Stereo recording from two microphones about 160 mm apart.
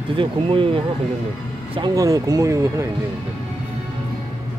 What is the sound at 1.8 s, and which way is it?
Speech, 25° right (ahead or behind).